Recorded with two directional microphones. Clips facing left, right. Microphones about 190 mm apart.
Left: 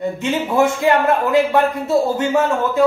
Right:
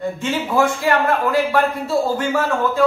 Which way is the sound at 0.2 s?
20° left (ahead or behind).